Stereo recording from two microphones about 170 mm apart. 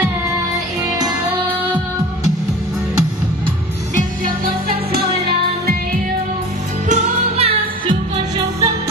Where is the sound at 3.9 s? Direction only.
55° right (ahead or behind).